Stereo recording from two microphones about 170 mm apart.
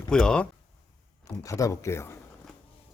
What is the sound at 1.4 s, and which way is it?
Speech, 20° left (ahead or behind).